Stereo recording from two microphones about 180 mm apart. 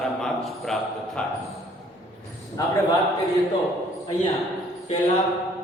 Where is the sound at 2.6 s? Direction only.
20° left (ahead or behind).